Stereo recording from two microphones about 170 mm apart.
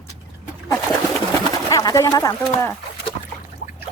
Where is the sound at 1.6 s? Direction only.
20° left (ahead or behind).